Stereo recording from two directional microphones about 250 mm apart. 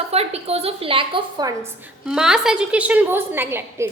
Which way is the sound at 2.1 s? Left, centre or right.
Centre.